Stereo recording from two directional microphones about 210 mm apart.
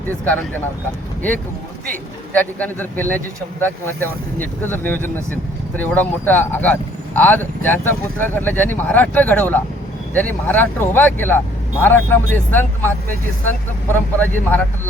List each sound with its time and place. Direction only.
1.9 s speech: 5° left (ahead or behind)
13.9 s speech: 10° left (ahead or behind)